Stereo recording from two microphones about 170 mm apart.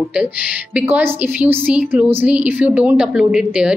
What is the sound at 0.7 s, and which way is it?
A woman's voice, 10° right (ahead or behind).